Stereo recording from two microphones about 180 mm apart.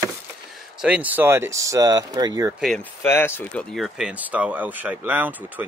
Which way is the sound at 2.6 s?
5° left (ahead or behind).